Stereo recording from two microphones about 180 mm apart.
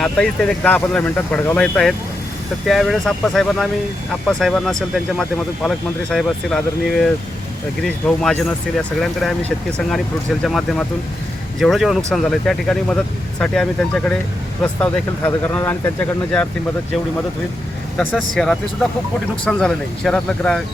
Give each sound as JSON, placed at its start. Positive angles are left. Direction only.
{"t": 0.0, "sound": "speech", "side_deg": 5}
{"t": 10.4, "sound": "speech", "side_deg": 0}
{"t": 17.9, "sound": "speech", "side_deg": 5}